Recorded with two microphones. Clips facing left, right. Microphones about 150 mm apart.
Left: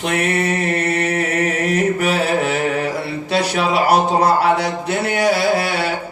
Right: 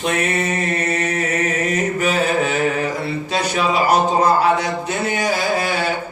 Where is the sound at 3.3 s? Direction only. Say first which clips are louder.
Left 2 dB; 70° left (ahead or behind).